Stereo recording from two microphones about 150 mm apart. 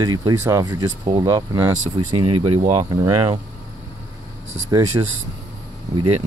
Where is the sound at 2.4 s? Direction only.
35° right (ahead or behind).